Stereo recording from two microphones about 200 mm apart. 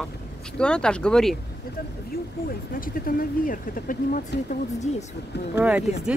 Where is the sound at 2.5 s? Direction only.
45° left (ahead or behind).